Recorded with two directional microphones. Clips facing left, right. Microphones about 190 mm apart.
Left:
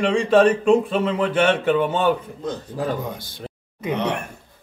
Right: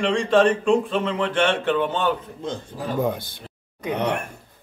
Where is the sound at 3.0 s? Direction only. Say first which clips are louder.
Right 7 dB; 55° right (ahead or behind).